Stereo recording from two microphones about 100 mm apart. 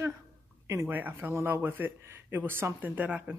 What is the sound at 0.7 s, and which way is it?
Speech, 25° right (ahead or behind).